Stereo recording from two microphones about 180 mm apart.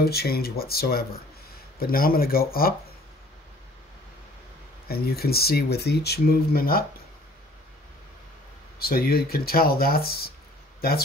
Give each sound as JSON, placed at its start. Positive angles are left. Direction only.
{"t": 0.0, "sound": "speech", "side_deg": 60}
{"t": 4.8, "sound": "speech", "side_deg": 60}
{"t": 8.7, "sound": "speech", "side_deg": 55}